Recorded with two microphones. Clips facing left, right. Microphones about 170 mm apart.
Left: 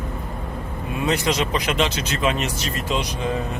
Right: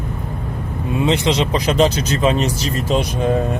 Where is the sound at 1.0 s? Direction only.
30° right (ahead or behind); by 3.4 s 50° right (ahead or behind).